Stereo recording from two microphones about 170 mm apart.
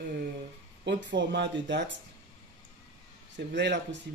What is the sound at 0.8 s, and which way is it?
Speech, 90° right.